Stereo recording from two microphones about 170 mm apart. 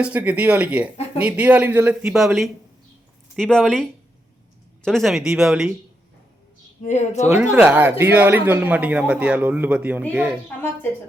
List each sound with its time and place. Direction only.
0.0 s speech: 10° right (ahead or behind)
0.9 s a sound: 35° left (ahead or behind)
1.2 s speech: 10° right (ahead or behind)
6.8 s speech: 45° left (ahead or behind)
7.5 s speech: 5° right (ahead or behind)